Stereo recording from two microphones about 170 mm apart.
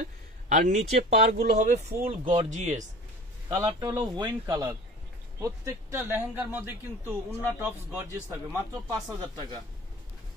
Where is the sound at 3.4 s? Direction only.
20° right (ahead or behind).